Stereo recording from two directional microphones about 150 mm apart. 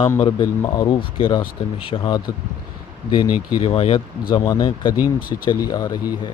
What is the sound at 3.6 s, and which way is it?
Speech, 40° left (ahead or behind).